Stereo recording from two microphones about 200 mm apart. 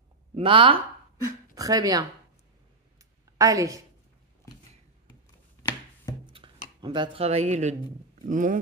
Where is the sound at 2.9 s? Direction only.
15° right (ahead or behind).